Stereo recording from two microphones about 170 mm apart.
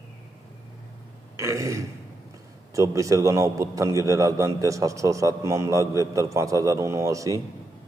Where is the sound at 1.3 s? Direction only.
20° right (ahead or behind).